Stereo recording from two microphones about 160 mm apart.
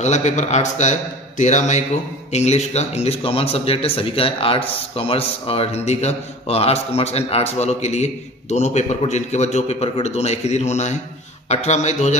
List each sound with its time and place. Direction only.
0.0 s a man's voice: 45° left (ahead or behind)